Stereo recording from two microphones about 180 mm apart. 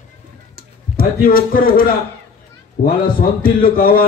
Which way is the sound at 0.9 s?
55° left (ahead or behind).